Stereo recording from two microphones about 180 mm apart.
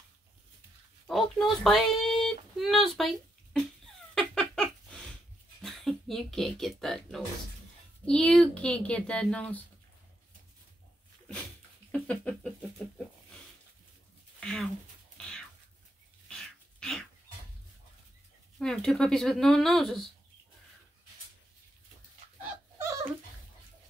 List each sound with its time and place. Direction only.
1.0 s speech: centre (ahead or behind)
4.1 s a sound: 5° left (ahead or behind)
5.6 s speech: centre (ahead or behind)
11.9 s a sound: 5° left (ahead or behind)
14.4 s speech: 5° left (ahead or behind)
15.1 s a sound: 5° left (ahead or behind)
16.3 s dog: 5° left (ahead or behind)
18.6 s speech: 5° left (ahead or behind)
22.4 s dog: 15° right (ahead or behind)